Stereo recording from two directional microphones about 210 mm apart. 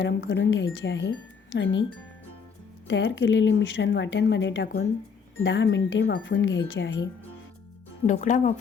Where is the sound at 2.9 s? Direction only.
60° left (ahead or behind).